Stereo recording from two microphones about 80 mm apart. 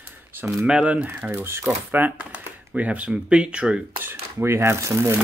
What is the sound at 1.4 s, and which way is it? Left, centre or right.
Speech, right.